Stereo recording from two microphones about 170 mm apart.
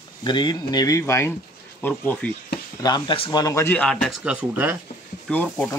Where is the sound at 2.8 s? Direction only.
25° left (ahead or behind); by 4.7 s 10° right (ahead or behind).